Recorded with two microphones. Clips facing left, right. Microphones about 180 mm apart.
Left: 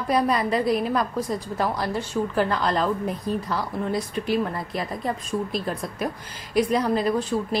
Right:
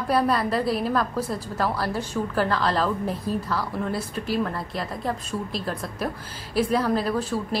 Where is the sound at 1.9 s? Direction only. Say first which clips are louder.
Left 1 dB; 10° right (ahead or behind).